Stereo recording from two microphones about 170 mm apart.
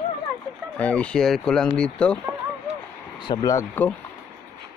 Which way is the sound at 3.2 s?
20° left (ahead or behind).